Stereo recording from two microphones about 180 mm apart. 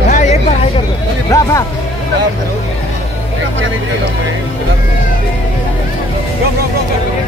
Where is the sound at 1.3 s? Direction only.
15° left (ahead or behind).